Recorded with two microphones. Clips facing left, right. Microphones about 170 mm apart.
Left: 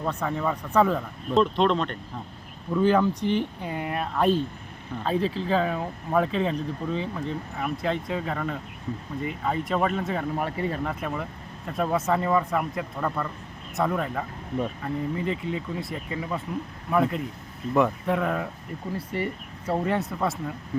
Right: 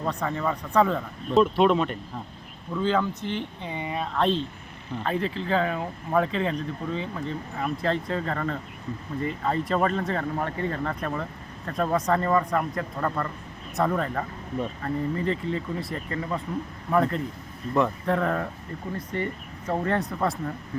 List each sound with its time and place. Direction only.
0.0 s speech: centre (ahead or behind)
2.7 s speech: 10° left (ahead or behind)